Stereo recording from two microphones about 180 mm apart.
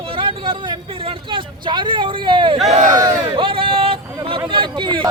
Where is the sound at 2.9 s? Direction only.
30° right (ahead or behind).